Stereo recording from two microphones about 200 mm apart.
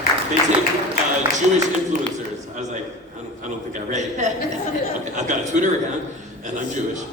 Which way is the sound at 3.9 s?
35° right (ahead or behind).